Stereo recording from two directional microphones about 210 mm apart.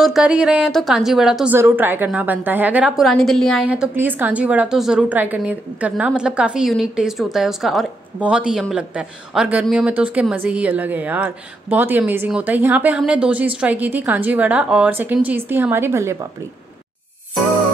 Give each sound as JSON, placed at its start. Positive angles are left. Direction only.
{"t": 0.0, "sound": "a woman's voice", "side_deg": -5}